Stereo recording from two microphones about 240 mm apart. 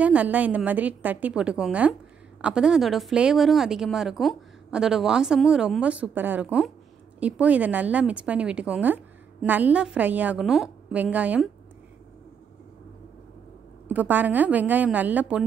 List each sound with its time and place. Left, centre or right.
0.0 s speech: centre
13.8 s a woman's voice: centre